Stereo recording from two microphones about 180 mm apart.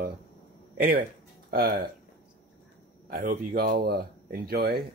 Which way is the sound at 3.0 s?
55° right (ahead or behind).